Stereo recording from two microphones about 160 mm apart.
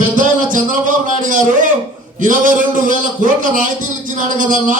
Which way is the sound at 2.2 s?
55° right (ahead or behind).